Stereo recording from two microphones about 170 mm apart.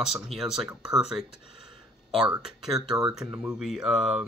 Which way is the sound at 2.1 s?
5° right (ahead or behind).